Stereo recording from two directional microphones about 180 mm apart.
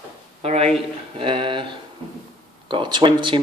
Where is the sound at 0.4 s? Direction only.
35° right (ahead or behind).